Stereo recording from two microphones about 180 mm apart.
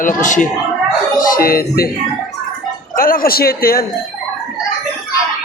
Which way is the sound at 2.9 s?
55° left (ahead or behind).